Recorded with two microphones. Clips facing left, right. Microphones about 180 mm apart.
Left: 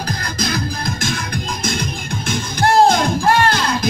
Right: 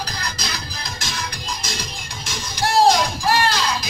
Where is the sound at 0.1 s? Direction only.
50° left (ahead or behind).